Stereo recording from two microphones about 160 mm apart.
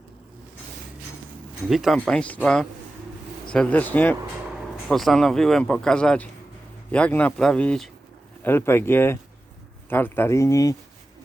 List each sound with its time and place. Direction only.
1.7 s speech: centre (ahead or behind)
4.5 s speech: centre (ahead or behind); by 10.8 s 20° left (ahead or behind)